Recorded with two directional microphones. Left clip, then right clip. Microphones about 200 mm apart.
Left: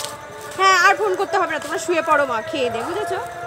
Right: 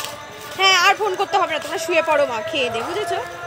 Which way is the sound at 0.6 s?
55° left (ahead or behind).